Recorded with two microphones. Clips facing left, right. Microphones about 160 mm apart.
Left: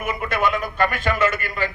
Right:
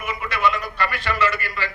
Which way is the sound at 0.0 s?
50° left (ahead or behind).